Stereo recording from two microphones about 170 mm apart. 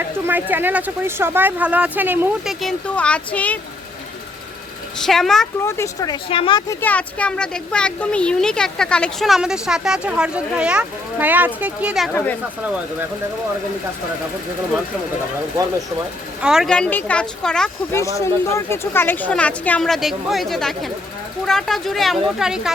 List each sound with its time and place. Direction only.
0.3 s speech: 10° right (ahead or behind); by 3.6 s 10° left (ahead or behind)
4.9 s speech: centre (ahead or behind)
5.6 s speech: 15° left (ahead or behind); by 6.6 s 30° left (ahead or behind)
6.7 s speech: 10° left (ahead or behind)
12.1 s speech: 10° left (ahead or behind)
16.4 s speech: 5° right (ahead or behind)
17.9 s speech: 20° left (ahead or behind); by 22.7 s 5° right (ahead or behind)